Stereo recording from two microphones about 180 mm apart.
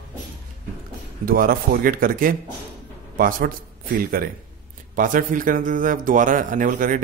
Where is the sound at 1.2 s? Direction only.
55° right (ahead or behind).